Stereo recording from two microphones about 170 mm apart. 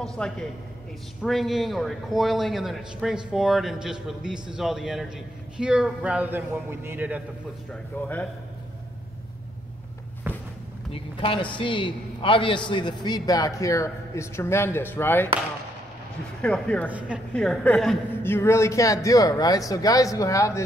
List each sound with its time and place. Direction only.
0.0 s a man's voice: 5° left (ahead or behind)
7.7 s speech: 10° left (ahead or behind)
10.3 s walk: 10° right (ahead or behind)
10.9 s a man's voice: 30° left (ahead or behind); by 15.2 s 10° left (ahead or behind)
16.3 s a man's voice: 5° left (ahead or behind)
18.2 s a man's voice: 15° left (ahead or behind)